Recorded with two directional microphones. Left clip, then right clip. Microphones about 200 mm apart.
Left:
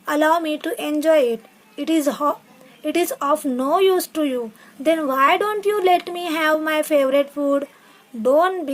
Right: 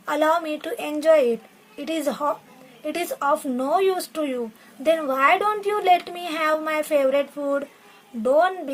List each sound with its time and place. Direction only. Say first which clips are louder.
0.0 s a woman's voice: left 3 dB; 25° left (ahead or behind)